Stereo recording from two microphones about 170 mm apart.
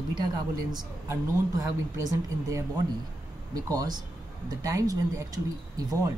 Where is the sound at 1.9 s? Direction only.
20° right (ahead or behind).